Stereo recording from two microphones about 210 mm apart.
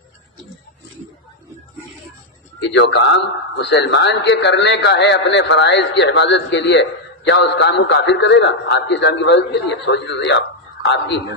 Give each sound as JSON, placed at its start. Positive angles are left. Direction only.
{"t": 2.6, "sound": "a man's voice", "side_deg": 60}